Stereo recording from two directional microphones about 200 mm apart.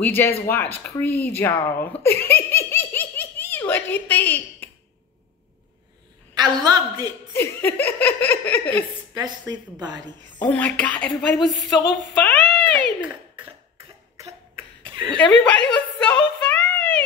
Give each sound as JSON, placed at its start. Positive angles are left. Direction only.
{"t": 0.0, "sound": "laughter", "side_deg": 10}
{"t": 2.5, "sound": "baby laughter", "side_deg": 10}
{"t": 6.3, "sound": "speech", "side_deg": -20}
{"t": 7.3, "sound": "laughter", "side_deg": 10}
{"t": 9.1, "sound": "speech", "side_deg": -20}
{"t": 10.4, "sound": "laughter", "side_deg": 5}
{"t": 11.1, "sound": "speech", "side_deg": 0}
{"t": 13.7, "sound": "cough", "side_deg": -15}
{"t": 14.5, "sound": "cough", "side_deg": -25}
{"t": 15.1, "sound": "a sound", "side_deg": 5}